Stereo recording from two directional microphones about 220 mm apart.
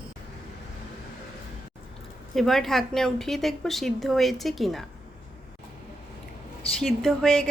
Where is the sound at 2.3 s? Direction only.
Centre (ahead or behind).